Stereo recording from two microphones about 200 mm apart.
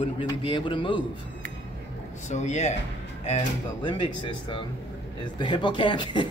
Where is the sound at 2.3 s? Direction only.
35° left (ahead or behind).